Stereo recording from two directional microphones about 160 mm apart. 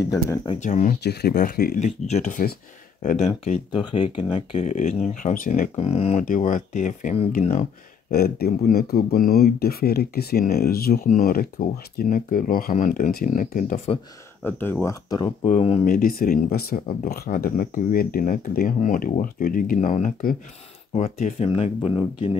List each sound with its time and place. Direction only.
0.1 s speech: 20° left (ahead or behind)
0.6 s speech: 50° left (ahead or behind)
1.0 s speech: 90° left; by 1.8 s 70° left (ahead or behind)
1.8 s speech: 45° left (ahead or behind)
4.6 s speech: 45° left (ahead or behind)
6.2 s speech: 55° left (ahead or behind)
8.1 s speech: 75° left (ahead or behind); by 13.7 s 55° left (ahead or behind)
14.4 s speech: 15° left (ahead or behind)
15.4 s speech: 40° left (ahead or behind)
15.8 s speech: 60° left (ahead or behind)
21.4 s speech: 40° left (ahead or behind)